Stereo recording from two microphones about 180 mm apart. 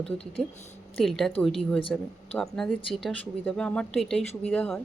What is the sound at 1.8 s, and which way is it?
Speech, 30° left (ahead or behind).